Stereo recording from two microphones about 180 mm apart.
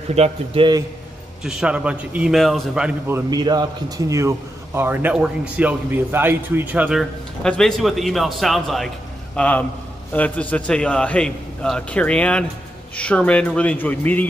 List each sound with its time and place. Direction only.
0.1 s a man's voice: 35° right (ahead or behind)
1.4 s a man's voice: 5° right (ahead or behind)